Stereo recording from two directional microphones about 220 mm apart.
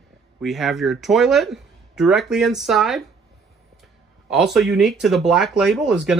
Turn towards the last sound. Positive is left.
turn(degrees=0)  # may be behind; listen again after turning